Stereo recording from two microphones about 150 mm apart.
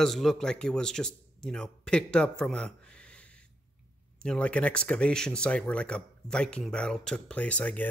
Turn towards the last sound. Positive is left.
turn(degrees=10)  # may be behind; listen again after turning